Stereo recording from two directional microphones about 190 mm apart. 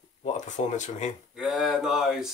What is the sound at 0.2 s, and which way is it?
Speech, 40° left (ahead or behind).